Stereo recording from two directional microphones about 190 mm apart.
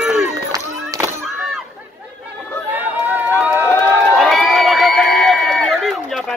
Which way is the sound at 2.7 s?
10° right (ahead or behind).